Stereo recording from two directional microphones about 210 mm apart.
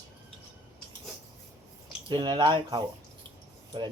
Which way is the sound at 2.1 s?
20° right (ahead or behind).